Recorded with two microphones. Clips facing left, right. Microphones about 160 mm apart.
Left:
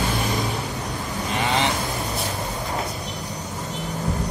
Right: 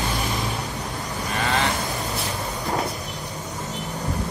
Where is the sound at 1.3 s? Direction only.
20° left (ahead or behind).